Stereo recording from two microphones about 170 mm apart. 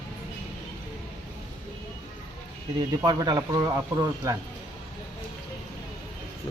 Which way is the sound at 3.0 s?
25° right (ahead or behind).